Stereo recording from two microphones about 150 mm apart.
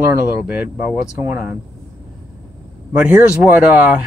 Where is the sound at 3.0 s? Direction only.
10° right (ahead or behind).